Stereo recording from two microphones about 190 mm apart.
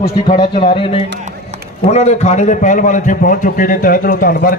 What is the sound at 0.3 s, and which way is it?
A man's voice, 25° left (ahead or behind).